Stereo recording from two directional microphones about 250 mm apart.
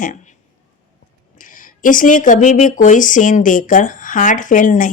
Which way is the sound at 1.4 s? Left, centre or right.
Left.